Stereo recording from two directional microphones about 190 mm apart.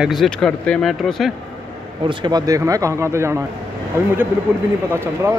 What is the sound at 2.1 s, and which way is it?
Speech, 25° right (ahead or behind).